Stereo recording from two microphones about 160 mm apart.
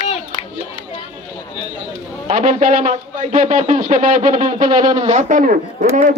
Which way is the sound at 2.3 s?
55° right (ahead or behind).